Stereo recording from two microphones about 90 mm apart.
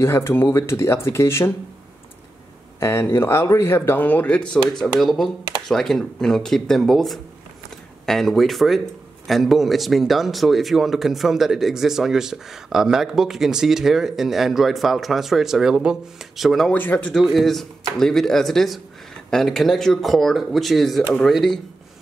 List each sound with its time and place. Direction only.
0.0 s speech: 30° left (ahead or behind)
2.8 s speech: 30° left (ahead or behind); by 16.7 s centre (ahead or behind)
16.7 s speech: 20° left (ahead or behind)
17.1 s speech: centre (ahead or behind)